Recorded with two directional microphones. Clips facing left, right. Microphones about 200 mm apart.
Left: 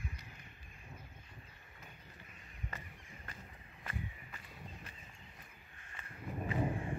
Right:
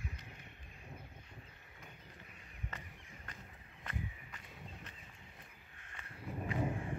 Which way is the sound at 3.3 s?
10° left (ahead or behind).